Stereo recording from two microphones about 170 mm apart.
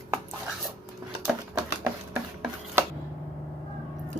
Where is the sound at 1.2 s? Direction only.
5° right (ahead or behind).